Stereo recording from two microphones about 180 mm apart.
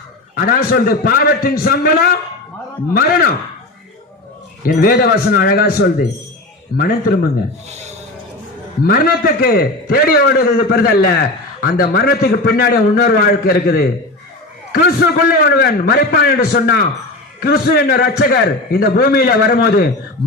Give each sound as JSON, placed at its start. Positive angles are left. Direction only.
{"t": 0.3, "sound": "a man's voice", "side_deg": 55}
{"t": 4.6, "sound": "a man's voice", "side_deg": 55}
{"t": 7.7, "sound": "snort", "side_deg": -40}
{"t": 8.8, "sound": "a man's voice", "side_deg": 55}